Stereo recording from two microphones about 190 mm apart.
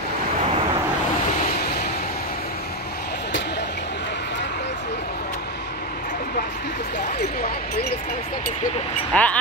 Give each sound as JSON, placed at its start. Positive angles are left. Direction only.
{"t": 9.1, "sound": "speech", "side_deg": 5}